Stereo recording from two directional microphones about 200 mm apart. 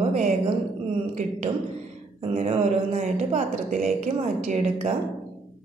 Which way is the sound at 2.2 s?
30° right (ahead or behind).